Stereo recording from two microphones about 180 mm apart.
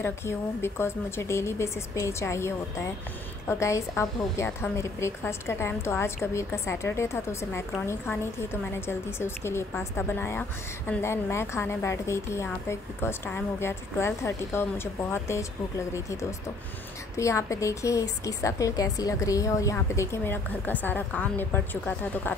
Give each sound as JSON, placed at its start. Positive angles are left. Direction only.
{"t": 0.0, "sound": "a woman's voice", "side_deg": 15}